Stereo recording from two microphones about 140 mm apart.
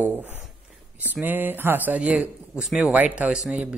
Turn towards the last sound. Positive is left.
turn(degrees=-10)  # may be behind; listen again after turning